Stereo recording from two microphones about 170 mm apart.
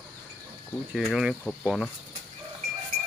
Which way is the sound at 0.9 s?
5° right (ahead or behind).